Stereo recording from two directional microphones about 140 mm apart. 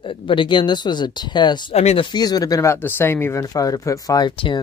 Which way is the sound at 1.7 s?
50° left (ahead or behind).